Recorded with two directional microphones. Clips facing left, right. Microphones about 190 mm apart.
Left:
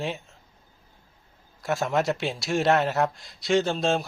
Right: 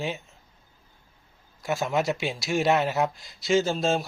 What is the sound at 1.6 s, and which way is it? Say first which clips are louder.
A man's voice: left 1 dB; centre (ahead or behind).